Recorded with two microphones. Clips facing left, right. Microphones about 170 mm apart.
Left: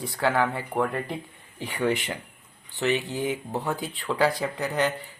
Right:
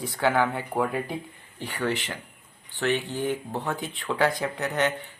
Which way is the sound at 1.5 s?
10° left (ahead or behind).